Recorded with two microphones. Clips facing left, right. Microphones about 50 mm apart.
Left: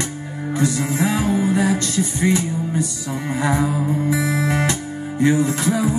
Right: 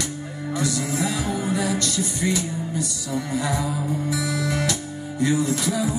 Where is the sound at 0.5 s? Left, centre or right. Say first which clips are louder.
Left 4 dB; left.